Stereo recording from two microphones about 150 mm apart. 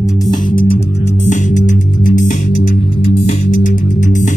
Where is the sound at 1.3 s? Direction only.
55° left (ahead or behind).